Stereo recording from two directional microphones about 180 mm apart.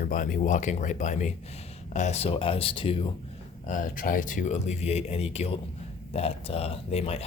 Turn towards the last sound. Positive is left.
turn(degrees=35)  # may be behind; listen again after turning